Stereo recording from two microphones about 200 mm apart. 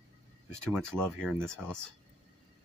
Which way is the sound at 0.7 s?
5° left (ahead or behind).